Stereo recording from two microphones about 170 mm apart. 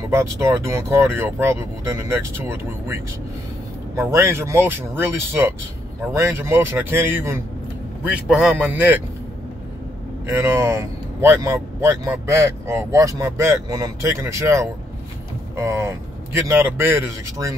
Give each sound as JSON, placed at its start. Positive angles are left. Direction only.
{"t": 0.1, "sound": "speech", "side_deg": -15}
{"t": 10.4, "sound": "speech", "side_deg": -15}